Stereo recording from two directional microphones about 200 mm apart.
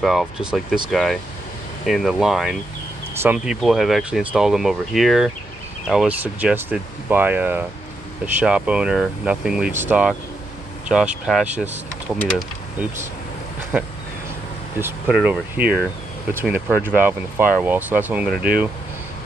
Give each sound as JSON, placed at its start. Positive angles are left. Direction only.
{"t": 0.0, "sound": "speech", "side_deg": 0}
{"t": 14.8, "sound": "speech", "side_deg": -5}